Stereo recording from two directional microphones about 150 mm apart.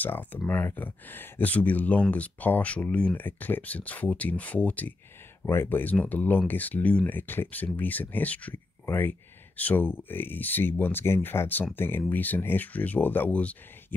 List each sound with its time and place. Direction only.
0.0 s speech: 10° left (ahead or behind)